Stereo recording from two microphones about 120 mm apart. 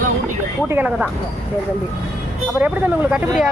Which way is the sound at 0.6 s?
15° right (ahead or behind).